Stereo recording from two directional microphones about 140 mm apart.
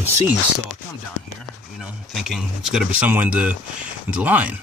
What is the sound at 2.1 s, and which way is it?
Speech, centre (ahead or behind).